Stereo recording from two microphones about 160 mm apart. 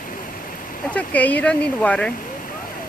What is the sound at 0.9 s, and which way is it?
Speech, 10° left (ahead or behind).